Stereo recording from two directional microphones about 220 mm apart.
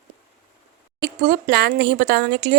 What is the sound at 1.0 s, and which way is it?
Speech, 45° right (ahead or behind).